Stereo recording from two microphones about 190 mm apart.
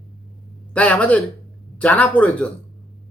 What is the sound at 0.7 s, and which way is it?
A man's voice, 5° left (ahead or behind).